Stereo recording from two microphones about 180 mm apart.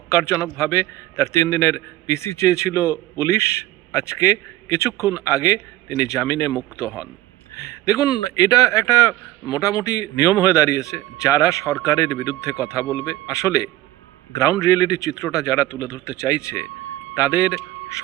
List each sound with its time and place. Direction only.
0.1 s a man's voice: 15° left (ahead or behind)